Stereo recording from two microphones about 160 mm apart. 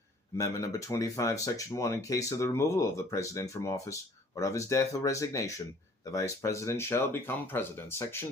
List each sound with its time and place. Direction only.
0.3 s speech: 20° left (ahead or behind)